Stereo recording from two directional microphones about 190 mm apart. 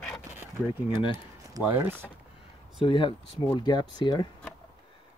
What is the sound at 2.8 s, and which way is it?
Speech, 25° left (ahead or behind).